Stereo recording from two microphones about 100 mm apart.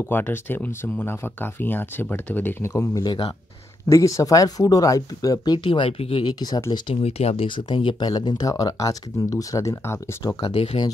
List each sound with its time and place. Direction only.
0.0 s speech: 20° left (ahead or behind)
2.7 s speech: 35° left (ahead or behind)
5.7 s speech: 70° left (ahead or behind)
6.2 s speech: 45° left (ahead or behind)
7.0 s speech: 90° left
7.4 s speech: 55° left (ahead or behind); by 9.9 s 30° left (ahead or behind)
10.2 s speech: 55° left (ahead or behind)